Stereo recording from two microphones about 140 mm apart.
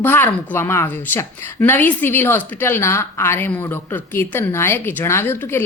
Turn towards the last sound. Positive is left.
turn(degrees=15)  # may be behind; listen again after turning